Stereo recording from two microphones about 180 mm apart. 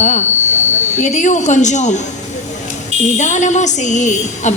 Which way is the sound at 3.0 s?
40° left (ahead or behind).